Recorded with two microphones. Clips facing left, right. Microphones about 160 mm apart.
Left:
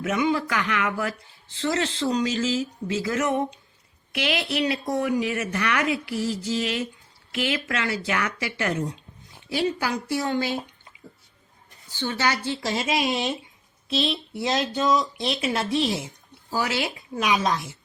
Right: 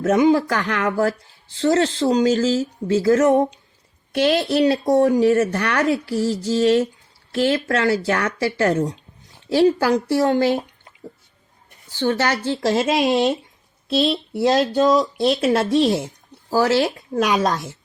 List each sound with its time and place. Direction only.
0.0 s a woman's voice: 35° right (ahead or behind)
11.9 s a woman's voice: 50° right (ahead or behind)